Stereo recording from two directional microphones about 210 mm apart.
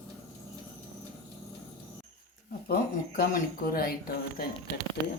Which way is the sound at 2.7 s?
40° left (ahead or behind).